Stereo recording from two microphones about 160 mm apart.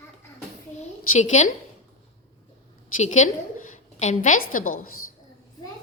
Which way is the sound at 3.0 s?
50° left (ahead or behind).